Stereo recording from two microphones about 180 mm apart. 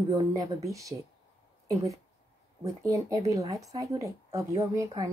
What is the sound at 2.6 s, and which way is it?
Speech, 20° right (ahead or behind).